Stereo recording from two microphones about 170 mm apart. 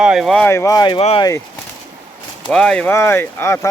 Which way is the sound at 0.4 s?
15° left (ahead or behind).